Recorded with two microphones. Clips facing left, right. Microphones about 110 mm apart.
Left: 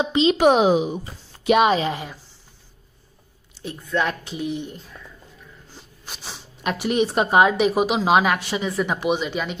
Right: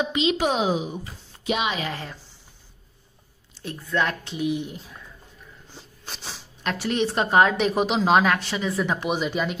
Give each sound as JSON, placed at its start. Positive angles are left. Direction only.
{"t": 0.0, "sound": "speech", "side_deg": 30}
{"t": 0.4, "sound": "speech", "side_deg": 60}
{"t": 1.9, "sound": "a woman's voice", "side_deg": 15}
{"t": 3.7, "sound": "a woman's voice", "side_deg": 10}
{"t": 4.4, "sound": "a woman's voice", "side_deg": -5}
{"t": 6.0, "sound": "a woman's voice", "side_deg": 5}